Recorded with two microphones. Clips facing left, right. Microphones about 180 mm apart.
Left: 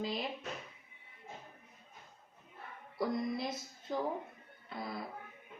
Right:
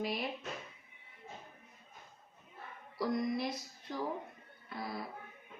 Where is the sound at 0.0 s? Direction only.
20° left (ahead or behind).